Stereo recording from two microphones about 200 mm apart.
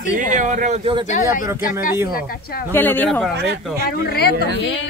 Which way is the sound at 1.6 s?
45° left (ahead or behind).